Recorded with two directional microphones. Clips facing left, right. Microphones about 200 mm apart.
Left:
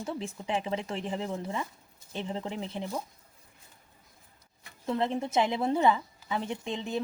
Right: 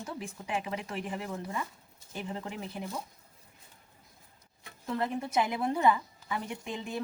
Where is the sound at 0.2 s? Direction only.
25° left (ahead or behind).